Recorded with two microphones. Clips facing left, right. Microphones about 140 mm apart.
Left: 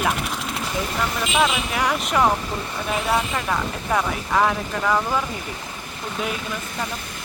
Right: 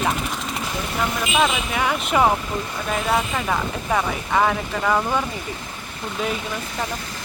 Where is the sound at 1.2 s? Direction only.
Centre (ahead or behind).